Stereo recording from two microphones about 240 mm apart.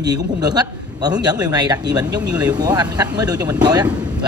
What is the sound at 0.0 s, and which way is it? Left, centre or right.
Speech, centre.